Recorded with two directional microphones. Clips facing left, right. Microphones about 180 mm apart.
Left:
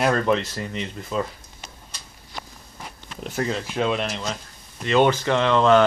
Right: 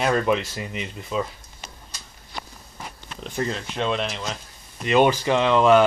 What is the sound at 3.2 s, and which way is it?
Speech, 5° left (ahead or behind).